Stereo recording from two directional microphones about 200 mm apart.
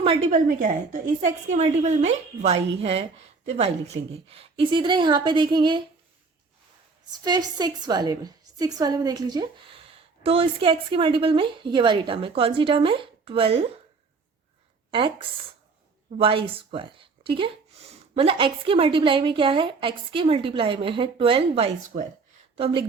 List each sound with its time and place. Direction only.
0.0 s a woman's voice: 30° right (ahead or behind)
0.4 s a woman's voice: 45° right (ahead or behind); by 5.8 s 25° right (ahead or behind)
7.3 s a woman's voice: 20° right (ahead or behind)
14.8 s a sound: 25° right (ahead or behind)
16.1 s a woman's voice: 25° right (ahead or behind)